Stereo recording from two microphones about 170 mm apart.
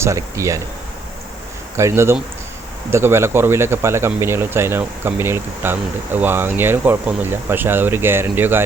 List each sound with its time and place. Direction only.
0.0 s speech: 20° right (ahead or behind)
1.7 s speech: 15° right (ahead or behind)